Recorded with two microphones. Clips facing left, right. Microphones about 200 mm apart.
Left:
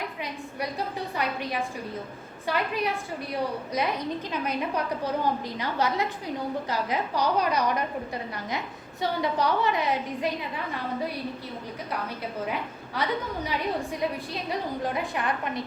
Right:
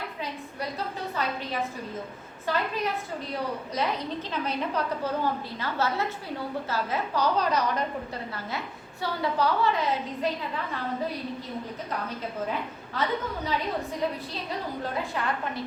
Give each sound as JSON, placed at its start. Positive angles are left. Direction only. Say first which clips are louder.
{"t": 1.1, "sound": "a woman's voice", "louder": "left 1 dB", "side_deg": 15}
{"t": 12.5, "sound": "a woman's voice", "louder": "even", "side_deg": 10}
{"t": 15.1, "sound": "a woman's voice", "louder": "left 1 dB", "side_deg": 15}